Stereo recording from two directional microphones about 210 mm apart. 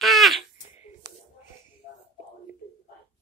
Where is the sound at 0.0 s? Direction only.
Centre (ahead or behind).